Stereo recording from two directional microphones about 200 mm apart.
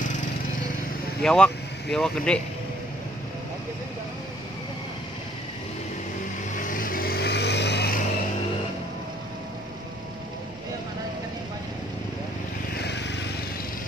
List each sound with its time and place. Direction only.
1.2 s speech: 5° left (ahead or behind)
6.5 s vehicle: 40° left (ahead or behind)
12.7 s vehicle: 55° left (ahead or behind)